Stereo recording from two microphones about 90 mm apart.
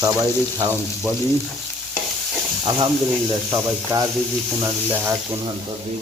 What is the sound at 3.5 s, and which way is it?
Frying, 30° right (ahead or behind).